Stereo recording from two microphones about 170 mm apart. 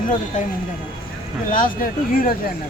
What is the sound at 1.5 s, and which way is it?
Speech, 55° left (ahead or behind).